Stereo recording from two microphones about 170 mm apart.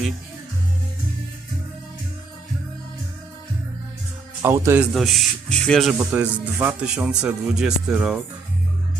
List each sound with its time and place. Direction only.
4.4 s a man's voice: 15° right (ahead or behind)
4.8 s speech: centre (ahead or behind)
6.0 s speech: 10° right (ahead or behind)